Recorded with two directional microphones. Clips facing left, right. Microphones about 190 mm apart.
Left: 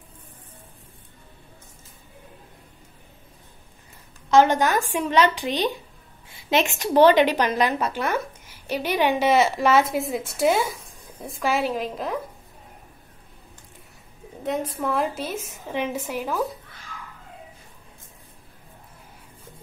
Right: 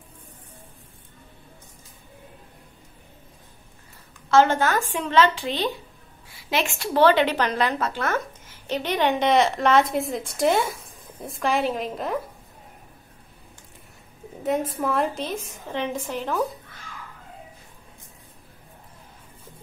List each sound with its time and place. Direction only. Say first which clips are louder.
4.3 s a woman's voice: left 1 dB; 15° left (ahead or behind); by 12.2 s centre (ahead or behind)
14.7 s a woman's voice: right 1 dB; centre (ahead or behind)